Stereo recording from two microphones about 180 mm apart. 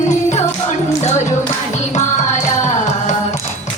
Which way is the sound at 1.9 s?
40° left (ahead or behind).